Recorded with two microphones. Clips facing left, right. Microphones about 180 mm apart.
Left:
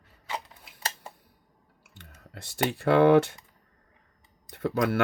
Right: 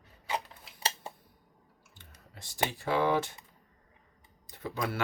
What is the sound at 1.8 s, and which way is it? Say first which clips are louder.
Clicking: left 9 dB; 70° left (ahead or behind).